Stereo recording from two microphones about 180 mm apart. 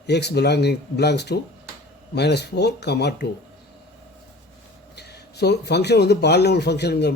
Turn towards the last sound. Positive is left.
turn(degrees=65)  # may be behind; listen again after turning